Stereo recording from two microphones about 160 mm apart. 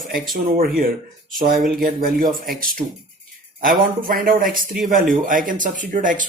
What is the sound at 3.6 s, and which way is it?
Speech, 60° right (ahead or behind).